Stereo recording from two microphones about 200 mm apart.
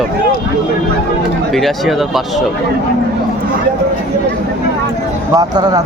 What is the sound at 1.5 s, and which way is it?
Speech, centre (ahead or behind).